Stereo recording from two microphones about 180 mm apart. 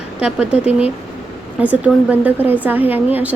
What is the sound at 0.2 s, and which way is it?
Speech, 5° right (ahead or behind).